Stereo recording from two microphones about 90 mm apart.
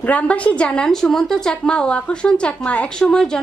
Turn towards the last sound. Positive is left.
turn(degrees=10)  # may be behind; listen again after turning